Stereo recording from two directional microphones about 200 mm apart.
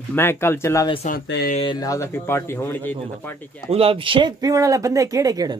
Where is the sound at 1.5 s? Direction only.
25° left (ahead or behind); by 3.6 s 10° left (ahead or behind).